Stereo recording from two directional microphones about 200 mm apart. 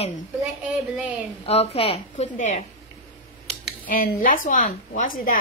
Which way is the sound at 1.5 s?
30° left (ahead or behind).